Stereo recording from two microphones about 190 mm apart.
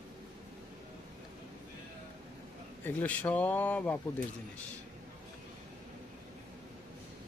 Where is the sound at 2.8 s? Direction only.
10° left (ahead or behind).